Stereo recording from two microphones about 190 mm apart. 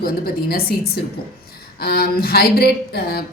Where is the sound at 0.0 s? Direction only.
55° left (ahead or behind).